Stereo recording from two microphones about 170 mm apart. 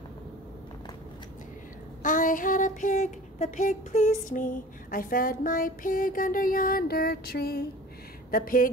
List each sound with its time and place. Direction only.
2.0 s child singing: 50° left (ahead or behind)
8.3 s speech: 55° left (ahead or behind)